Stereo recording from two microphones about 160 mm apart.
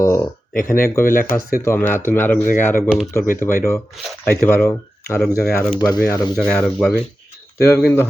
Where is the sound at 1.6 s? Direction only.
15° left (ahead or behind).